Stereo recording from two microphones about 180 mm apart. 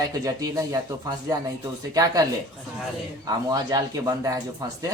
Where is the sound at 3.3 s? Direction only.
20° right (ahead or behind).